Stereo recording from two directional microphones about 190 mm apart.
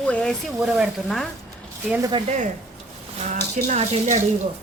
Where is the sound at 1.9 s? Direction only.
20° right (ahead or behind); by 4.2 s 40° right (ahead or behind).